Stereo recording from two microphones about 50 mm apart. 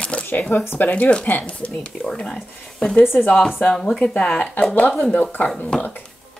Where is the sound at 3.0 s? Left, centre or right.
Left.